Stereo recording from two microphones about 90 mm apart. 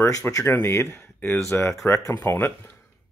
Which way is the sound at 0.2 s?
35° left (ahead or behind).